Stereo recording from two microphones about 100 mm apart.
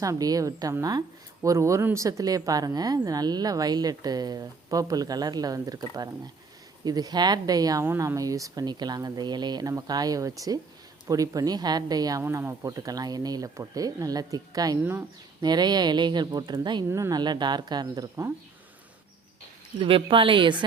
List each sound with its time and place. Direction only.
0.0 s speech: 35° right (ahead or behind)
12.2 s speech: 25° right (ahead or behind)
12.6 s a woman's voice: 35° right (ahead or behind)
16.9 s speech: 30° right (ahead or behind)
17.2 s a woman's voice: 45° right (ahead or behind)
19.8 s a woman's voice: 60° right (ahead or behind)